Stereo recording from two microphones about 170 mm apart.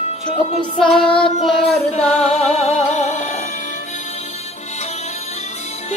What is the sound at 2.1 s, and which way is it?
Music, 40° left (ahead or behind).